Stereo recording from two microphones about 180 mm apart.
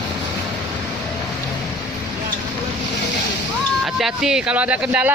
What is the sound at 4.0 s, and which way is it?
Speech, centre (ahead or behind).